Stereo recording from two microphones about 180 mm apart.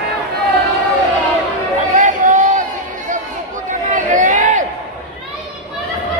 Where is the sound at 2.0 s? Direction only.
45° right (ahead or behind).